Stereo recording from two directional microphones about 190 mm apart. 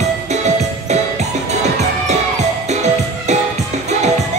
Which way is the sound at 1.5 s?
35° right (ahead or behind).